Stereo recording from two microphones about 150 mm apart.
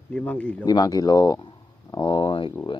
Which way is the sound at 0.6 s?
25° left (ahead or behind).